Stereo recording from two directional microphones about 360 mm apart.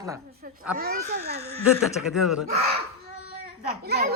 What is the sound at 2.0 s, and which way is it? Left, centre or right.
Speech, centre.